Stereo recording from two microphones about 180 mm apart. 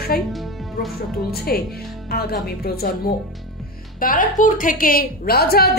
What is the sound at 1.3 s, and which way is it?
A woman's voice, 60° left (ahead or behind).